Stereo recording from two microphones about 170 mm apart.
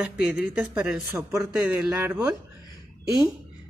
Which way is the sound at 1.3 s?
20° right (ahead or behind).